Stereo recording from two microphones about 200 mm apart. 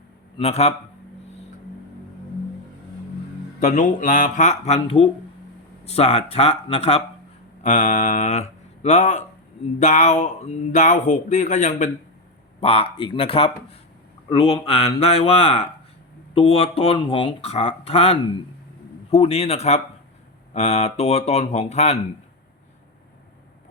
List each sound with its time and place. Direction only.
0.3 s speech: 30° left (ahead or behind)
3.6 s speech: 40° left (ahead or behind)